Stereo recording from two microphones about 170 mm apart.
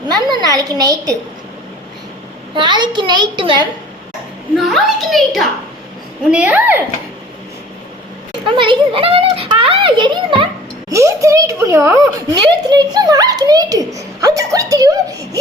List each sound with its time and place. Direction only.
0.1 s a woman's voice: 25° right (ahead or behind)
2.6 s a child's voice: 25° right (ahead or behind)
4.5 s a child's voice: centre (ahead or behind)
8.4 s a child's voice: 30° right (ahead or behind)
10.9 s a child's voice: 15° right (ahead or behind)